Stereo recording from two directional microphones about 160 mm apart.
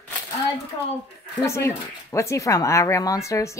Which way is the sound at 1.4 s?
20° left (ahead or behind).